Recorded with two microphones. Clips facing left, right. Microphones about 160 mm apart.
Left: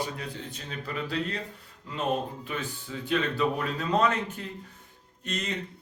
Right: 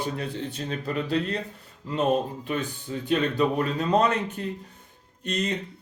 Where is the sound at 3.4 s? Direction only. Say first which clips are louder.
Right 4 dB; 40° right (ahead or behind).